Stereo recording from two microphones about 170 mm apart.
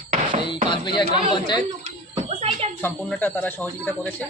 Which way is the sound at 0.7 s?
25° left (ahead or behind).